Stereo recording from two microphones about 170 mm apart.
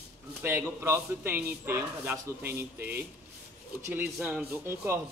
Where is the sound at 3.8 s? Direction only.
10° right (ahead or behind).